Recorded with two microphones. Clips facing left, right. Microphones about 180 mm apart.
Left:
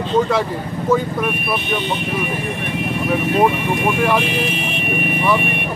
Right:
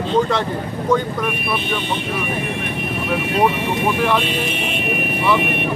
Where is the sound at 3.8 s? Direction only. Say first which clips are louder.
Left 1 dB; 10° left (ahead or behind).